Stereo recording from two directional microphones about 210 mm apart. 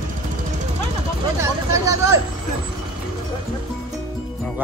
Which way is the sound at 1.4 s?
15° right (ahead or behind).